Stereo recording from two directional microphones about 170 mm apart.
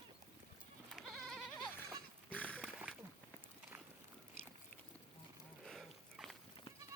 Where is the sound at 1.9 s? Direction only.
10° left (ahead or behind).